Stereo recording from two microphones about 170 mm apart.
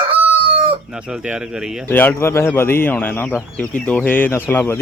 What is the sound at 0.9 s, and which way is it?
Speech, 5° right (ahead or behind).